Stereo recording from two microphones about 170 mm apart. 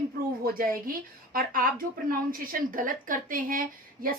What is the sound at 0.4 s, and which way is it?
A woman's voice, 55° right (ahead or behind).